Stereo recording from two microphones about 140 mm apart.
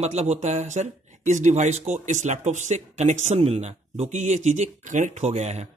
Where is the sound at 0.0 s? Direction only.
50° right (ahead or behind).